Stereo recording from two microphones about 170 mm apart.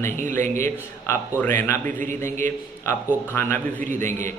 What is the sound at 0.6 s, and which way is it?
A man's voice, 15° left (ahead or behind).